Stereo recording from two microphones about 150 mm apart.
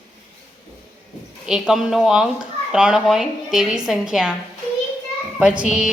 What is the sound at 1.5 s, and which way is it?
A woman's voice, 5° right (ahead or behind).